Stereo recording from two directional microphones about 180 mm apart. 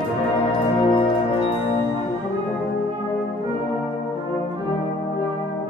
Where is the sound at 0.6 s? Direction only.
30° left (ahead or behind).